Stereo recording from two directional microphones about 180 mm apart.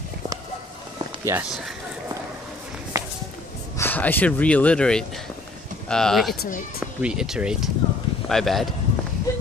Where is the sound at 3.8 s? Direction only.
10° left (ahead or behind).